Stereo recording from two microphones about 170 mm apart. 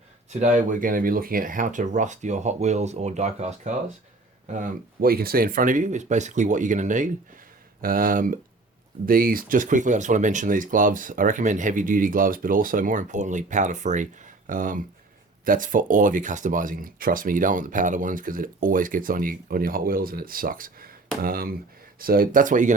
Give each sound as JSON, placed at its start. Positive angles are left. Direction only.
{"t": 0.3, "sound": "speech", "side_deg": -45}
{"t": 4.5, "sound": "speech", "side_deg": -55}